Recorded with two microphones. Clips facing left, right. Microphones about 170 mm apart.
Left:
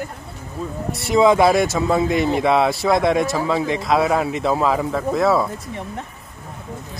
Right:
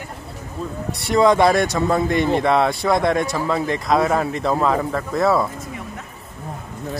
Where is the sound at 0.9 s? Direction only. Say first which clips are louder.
Left 1 dB; centre (ahead or behind).